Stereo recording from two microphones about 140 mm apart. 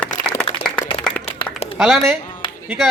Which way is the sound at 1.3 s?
45° left (ahead or behind).